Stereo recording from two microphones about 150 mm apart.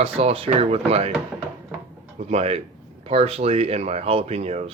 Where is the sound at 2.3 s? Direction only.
40° right (ahead or behind).